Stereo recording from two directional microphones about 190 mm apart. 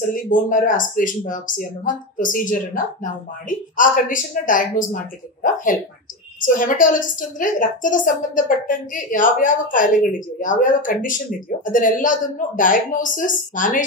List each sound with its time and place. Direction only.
0.1 s a woman's voice: 45° left (ahead or behind)